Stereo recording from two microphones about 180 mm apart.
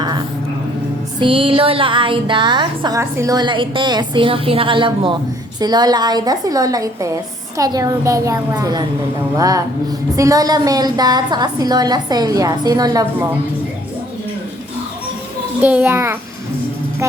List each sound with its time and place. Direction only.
0.0 s a sound: 25° right (ahead or behind)
1.2 s a woman's voice: 30° right (ahead or behind)
15.6 s a child's voice: 10° right (ahead or behind)